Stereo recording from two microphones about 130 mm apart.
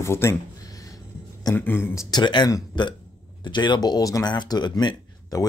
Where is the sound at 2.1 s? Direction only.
35° left (ahead or behind).